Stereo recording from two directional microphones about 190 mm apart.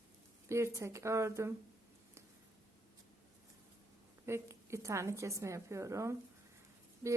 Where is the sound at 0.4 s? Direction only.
15° right (ahead or behind).